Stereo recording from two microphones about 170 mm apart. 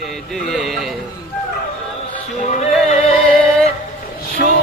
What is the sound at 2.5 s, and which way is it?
Music, 45° left (ahead or behind).